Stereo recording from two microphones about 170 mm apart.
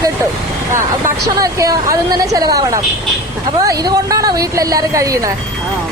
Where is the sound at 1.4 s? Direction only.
20° right (ahead or behind).